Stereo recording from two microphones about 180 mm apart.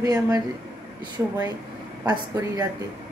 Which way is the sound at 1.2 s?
10° right (ahead or behind).